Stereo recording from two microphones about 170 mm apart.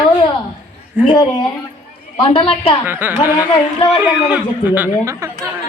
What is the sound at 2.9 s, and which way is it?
Speech, 10° right (ahead or behind).